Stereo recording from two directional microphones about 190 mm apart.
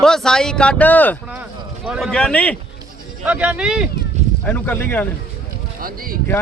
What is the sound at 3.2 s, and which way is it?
Speech, 5° right (ahead or behind).